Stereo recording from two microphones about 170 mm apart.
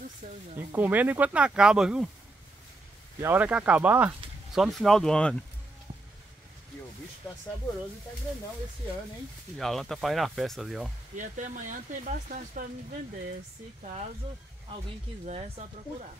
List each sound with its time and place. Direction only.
0.6 s speech: 10° right (ahead or behind)
3.2 s speech: 10° right (ahead or behind)
4.6 s speech: centre (ahead or behind)
9.6 s speech: centre (ahead or behind)
11.1 s speech: 50° right (ahead or behind)
15.2 s speech: 40° right (ahead or behind)